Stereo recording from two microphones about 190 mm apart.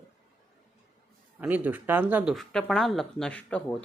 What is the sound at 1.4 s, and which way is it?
Speech, 10° right (ahead or behind).